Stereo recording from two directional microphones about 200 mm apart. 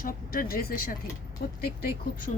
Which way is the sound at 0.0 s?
45° left (ahead or behind).